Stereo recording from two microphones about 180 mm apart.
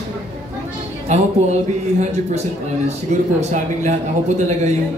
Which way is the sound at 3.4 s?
40° right (ahead or behind).